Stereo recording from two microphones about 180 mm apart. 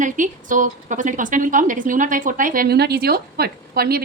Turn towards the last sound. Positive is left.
turn(degrees=-55)  # may be behind; listen again after turning